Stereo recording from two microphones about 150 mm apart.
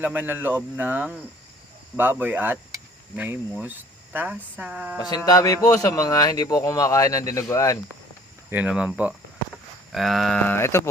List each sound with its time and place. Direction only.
0.0 s speech: 10° right (ahead or behind)
4.9 s speech: 25° left (ahead or behind)
8.4 s speech: 10° right (ahead or behind); by 10.8 s 15° left (ahead or behind)